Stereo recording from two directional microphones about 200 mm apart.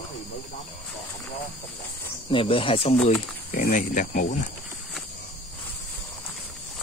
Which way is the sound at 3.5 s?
45° left (ahead or behind).